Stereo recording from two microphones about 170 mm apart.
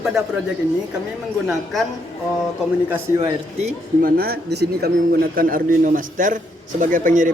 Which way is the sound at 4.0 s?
65° right (ahead or behind).